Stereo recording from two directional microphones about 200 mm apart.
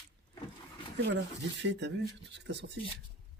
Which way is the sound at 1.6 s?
60° right (ahead or behind).